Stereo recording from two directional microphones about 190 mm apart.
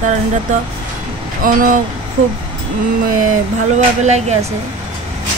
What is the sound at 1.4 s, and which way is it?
Speech, 45° right (ahead or behind).